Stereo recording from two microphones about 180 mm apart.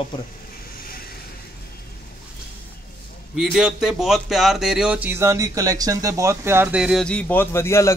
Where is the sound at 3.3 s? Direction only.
5° right (ahead or behind).